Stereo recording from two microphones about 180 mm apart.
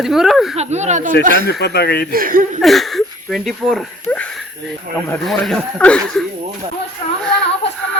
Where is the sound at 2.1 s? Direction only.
50° right (ahead or behind).